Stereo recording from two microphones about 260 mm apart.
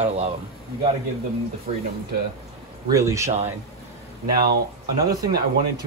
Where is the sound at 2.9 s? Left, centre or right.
Centre.